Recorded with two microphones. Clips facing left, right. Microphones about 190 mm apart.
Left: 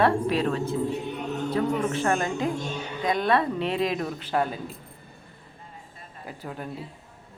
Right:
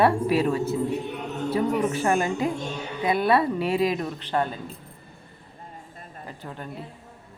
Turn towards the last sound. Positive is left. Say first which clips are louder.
# left 2 dB
turn(degrees=5)  # may be behind; listen again after turning